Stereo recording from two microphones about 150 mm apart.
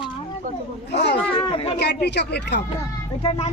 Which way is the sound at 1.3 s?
35° left (ahead or behind).